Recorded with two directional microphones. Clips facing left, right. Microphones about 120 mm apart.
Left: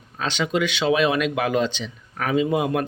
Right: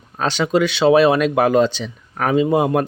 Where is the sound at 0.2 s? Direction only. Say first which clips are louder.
Right 6 dB; 40° right (ahead or behind).